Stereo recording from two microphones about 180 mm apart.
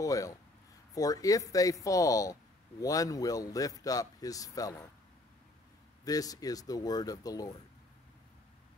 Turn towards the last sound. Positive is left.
turn(degrees=20)  # may be behind; listen again after turning